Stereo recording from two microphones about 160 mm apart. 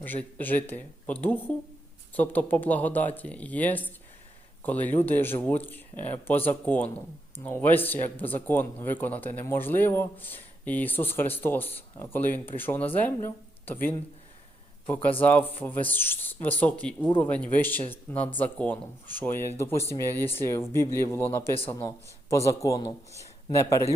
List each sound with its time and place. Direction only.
0.0 s a man's voice: 10° left (ahead or behind)
15.2 s a man's voice: 10° left (ahead or behind)